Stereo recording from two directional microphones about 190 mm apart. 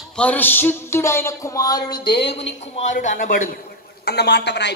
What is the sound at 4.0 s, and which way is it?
Speech, 60° left (ahead or behind).